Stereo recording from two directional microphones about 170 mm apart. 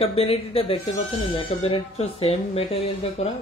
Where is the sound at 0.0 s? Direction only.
35° left (ahead or behind).